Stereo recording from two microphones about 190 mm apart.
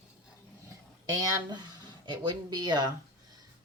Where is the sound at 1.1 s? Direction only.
20° right (ahead or behind).